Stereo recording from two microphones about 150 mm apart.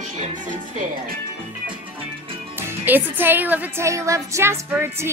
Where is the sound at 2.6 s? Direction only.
15° right (ahead or behind).